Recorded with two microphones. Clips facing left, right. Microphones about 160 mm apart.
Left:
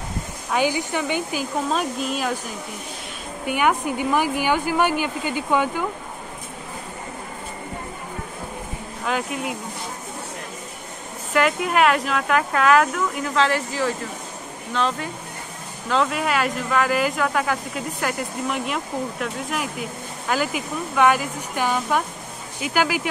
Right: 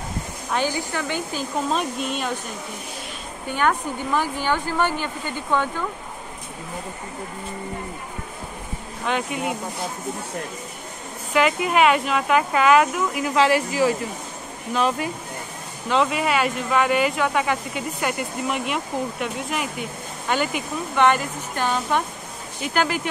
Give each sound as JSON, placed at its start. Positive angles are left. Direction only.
{"t": 0.5, "sound": "speech", "side_deg": 15}
{"t": 1.7, "sound": "speech", "side_deg": 0}
{"t": 3.4, "sound": "speech", "side_deg": 10}
{"t": 9.0, "sound": "speech", "side_deg": 0}
{"t": 11.3, "sound": "speech", "side_deg": 0}